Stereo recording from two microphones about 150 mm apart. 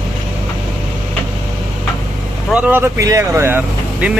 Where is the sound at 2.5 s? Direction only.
10° right (ahead or behind).